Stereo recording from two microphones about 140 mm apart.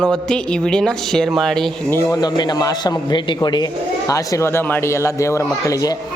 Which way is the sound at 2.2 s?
30° left (ahead or behind).